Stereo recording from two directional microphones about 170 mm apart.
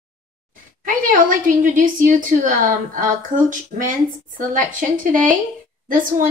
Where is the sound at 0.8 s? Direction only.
55° right (ahead or behind).